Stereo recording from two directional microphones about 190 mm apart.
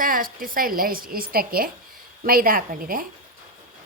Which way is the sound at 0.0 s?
50° right (ahead or behind).